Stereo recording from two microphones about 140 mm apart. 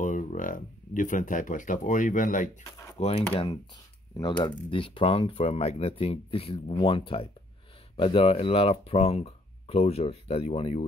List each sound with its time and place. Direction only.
0.0 s speech: 65° left (ahead or behind)
3.0 s speech: 45° left (ahead or behind)
4.2 s speech: 35° left (ahead or behind)